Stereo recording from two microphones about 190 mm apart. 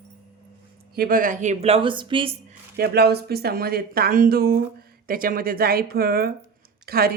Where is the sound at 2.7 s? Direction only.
55° right (ahead or behind).